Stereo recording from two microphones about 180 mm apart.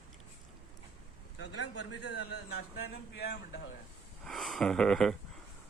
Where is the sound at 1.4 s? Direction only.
75° left (ahead or behind).